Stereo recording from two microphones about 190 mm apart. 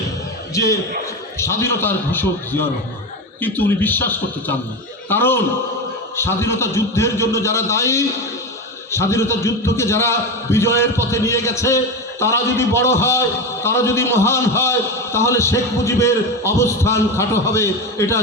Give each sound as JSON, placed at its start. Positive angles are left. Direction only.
{"t": 0.5, "sound": "a man's voice", "side_deg": 15}